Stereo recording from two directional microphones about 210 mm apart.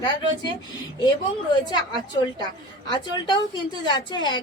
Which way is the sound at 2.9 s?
20° left (ahead or behind).